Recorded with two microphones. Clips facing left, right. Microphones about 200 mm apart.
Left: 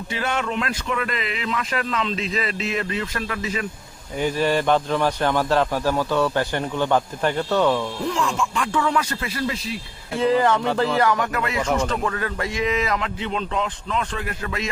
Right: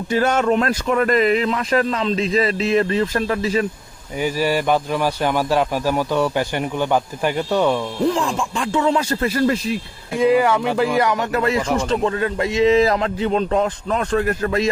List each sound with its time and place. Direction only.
0.1 s speech: 40° right (ahead or behind)
4.2 s a man's voice: 10° right (ahead or behind)
8.0 s speech: 35° right (ahead or behind)
9.2 s speech: 45° right (ahead or behind)
10.2 s a man's voice: 10° right (ahead or behind); by 14.7 s 40° right (ahead or behind)